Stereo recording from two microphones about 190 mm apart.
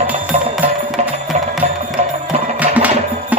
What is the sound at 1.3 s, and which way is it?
Music, 35° right (ahead or behind).